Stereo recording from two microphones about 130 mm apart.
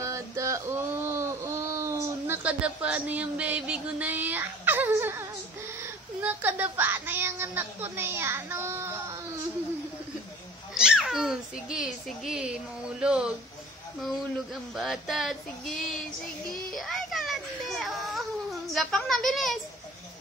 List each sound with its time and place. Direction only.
0.0 s a sound: 25° right (ahead or behind)
5.8 s a child's voice: 15° right (ahead or behind)
10.7 s a child's voice: 5° right (ahead or behind)
16.7 s baby cry: centre (ahead or behind)